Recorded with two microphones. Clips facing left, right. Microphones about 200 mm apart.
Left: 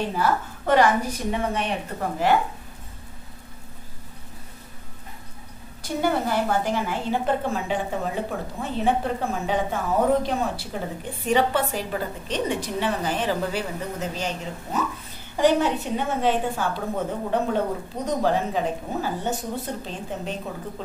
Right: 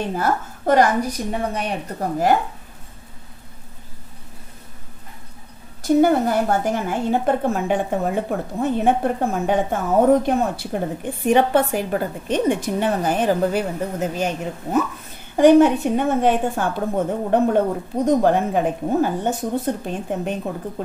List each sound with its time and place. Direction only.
0.1 s a woman's voice: 45° right (ahead or behind)
5.9 s a woman's voice: 45° right (ahead or behind)